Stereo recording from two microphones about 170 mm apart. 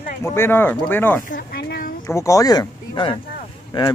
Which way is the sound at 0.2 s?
15° left (ahead or behind).